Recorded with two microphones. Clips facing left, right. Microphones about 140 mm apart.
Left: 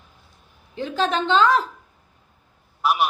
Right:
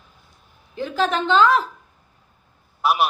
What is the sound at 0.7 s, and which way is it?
Speech, 30° left (ahead or behind).